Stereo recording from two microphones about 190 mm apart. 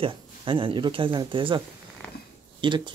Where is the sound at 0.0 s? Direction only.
25° right (ahead or behind).